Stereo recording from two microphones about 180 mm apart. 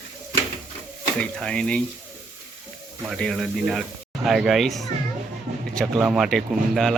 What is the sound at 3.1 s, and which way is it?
Speech, centre (ahead or behind).